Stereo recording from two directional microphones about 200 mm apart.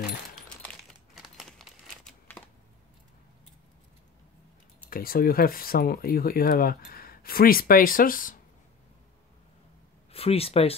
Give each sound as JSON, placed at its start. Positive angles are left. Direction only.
{"t": 0.6, "sound": "typing", "side_deg": 0}
{"t": 4.8, "sound": "speech", "side_deg": 45}
{"t": 10.1, "sound": "speech", "side_deg": 30}